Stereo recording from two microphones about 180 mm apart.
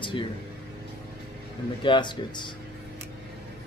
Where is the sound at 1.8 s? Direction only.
25° left (ahead or behind).